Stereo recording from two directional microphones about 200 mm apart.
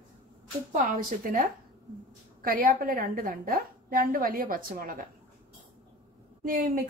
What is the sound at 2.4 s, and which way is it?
A woman's voice, 45° right (ahead or behind).